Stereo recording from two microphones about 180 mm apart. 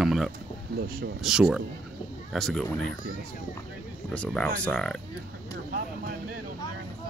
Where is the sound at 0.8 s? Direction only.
55° right (ahead or behind).